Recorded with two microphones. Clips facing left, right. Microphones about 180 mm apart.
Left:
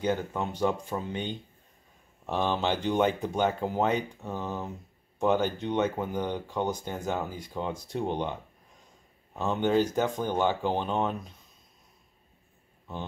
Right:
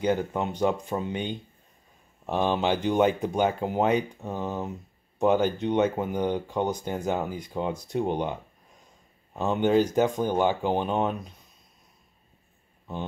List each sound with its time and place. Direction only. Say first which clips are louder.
0.0 s speech: right 3 dB; 15° right (ahead or behind)